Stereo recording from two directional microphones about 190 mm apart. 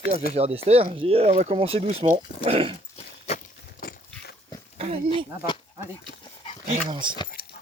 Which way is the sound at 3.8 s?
50° left (ahead or behind).